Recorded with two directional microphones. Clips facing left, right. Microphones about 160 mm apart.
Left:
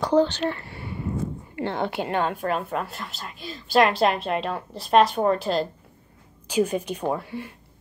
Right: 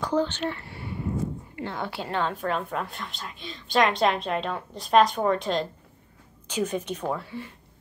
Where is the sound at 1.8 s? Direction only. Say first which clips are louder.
Left 6 dB; 20° left (ahead or behind).